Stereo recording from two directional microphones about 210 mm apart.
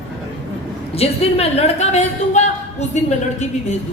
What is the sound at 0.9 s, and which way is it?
A woman's voice, 30° left (ahead or behind).